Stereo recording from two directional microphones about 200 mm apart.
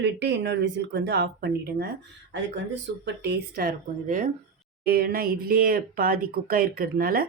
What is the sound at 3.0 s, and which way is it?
Speech, 55° right (ahead or behind).